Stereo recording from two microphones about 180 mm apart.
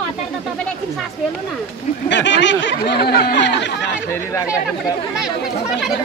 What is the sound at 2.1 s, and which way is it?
Speech, 80° left.